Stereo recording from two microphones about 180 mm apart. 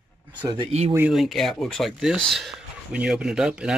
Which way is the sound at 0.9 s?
5° right (ahead or behind).